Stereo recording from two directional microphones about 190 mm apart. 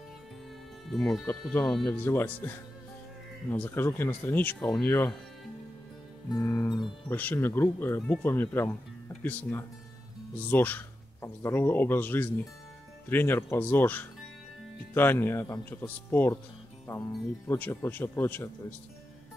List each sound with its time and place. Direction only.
0.9 s speech: centre (ahead or behind)
6.3 s a man's voice: 15° left (ahead or behind)
17.5 s speech: 10° left (ahead or behind)